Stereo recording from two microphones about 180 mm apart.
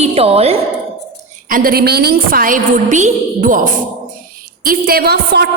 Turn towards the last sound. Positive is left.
turn(degrees=-65)  # may be behind; listen again after turning